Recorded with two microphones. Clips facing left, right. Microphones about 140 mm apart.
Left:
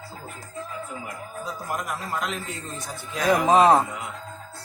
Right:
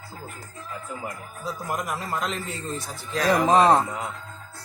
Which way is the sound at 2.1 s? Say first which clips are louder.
Right 1 dB; 5° left (ahead or behind).